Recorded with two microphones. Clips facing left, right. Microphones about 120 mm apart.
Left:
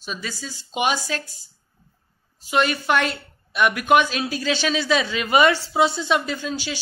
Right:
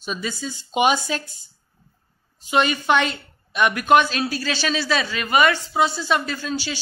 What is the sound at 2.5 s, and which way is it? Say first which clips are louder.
A woman's voice: right 1 dB; centre (ahead or behind).